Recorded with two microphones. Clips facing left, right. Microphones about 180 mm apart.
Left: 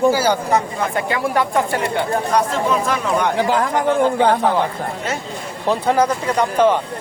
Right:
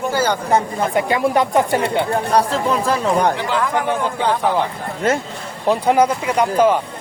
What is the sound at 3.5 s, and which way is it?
Speech, 45° left (ahead or behind).